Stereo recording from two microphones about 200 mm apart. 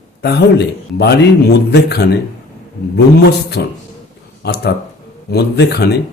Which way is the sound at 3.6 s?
55° left (ahead or behind).